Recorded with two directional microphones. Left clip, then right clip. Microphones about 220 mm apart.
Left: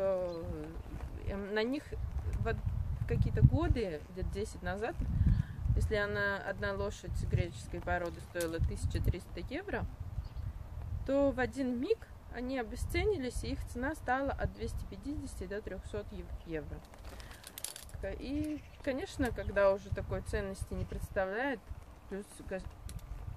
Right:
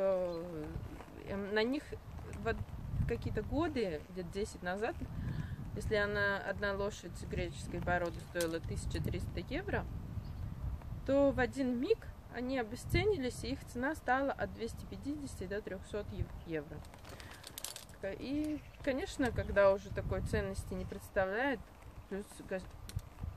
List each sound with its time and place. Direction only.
0.0 s a sound: centre (ahead or behind)
3.1 s speech: centre (ahead or behind)
11.1 s speech: centre (ahead or behind)